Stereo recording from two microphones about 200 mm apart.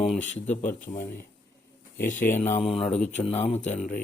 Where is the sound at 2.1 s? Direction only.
40° left (ahead or behind).